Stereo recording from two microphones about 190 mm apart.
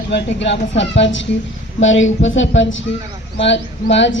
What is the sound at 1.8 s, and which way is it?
Speech, 90° left.